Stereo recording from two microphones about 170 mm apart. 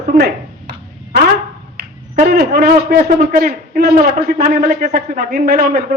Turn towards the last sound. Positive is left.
turn(degrees=-70)  # may be behind; listen again after turning